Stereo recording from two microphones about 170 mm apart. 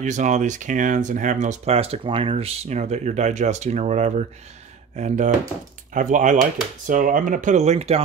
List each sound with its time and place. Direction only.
0.0 s speech: 45° right (ahead or behind)